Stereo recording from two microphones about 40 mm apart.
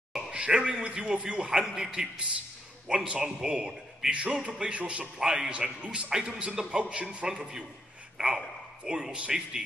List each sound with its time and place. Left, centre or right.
0.1 s a man's voice: right
7.2 s a man's voice: centre
8.2 s speech: right
8.8 s a man's voice: centre